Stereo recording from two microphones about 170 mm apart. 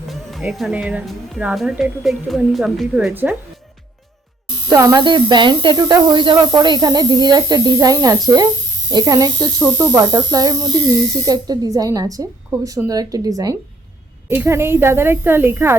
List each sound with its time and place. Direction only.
0.1 s speech: centre (ahead or behind)
4.7 s a woman's voice: 20° right (ahead or behind)